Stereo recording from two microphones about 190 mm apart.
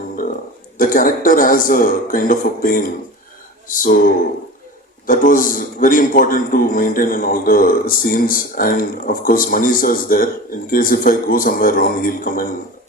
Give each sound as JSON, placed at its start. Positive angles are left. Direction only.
{"t": 0.8, "sound": "a man's voice", "side_deg": 45}